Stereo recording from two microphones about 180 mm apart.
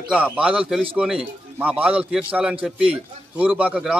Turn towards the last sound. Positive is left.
turn(degrees=-5)  # may be behind; listen again after turning